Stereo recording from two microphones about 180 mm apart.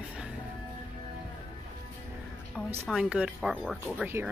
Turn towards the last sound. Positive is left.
turn(degrees=-10)  # may be behind; listen again after turning